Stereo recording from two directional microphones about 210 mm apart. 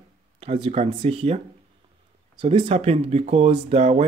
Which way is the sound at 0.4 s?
25° right (ahead or behind).